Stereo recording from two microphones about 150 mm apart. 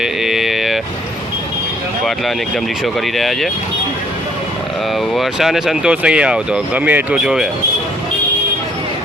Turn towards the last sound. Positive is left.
turn(degrees=-5)  # may be behind; listen again after turning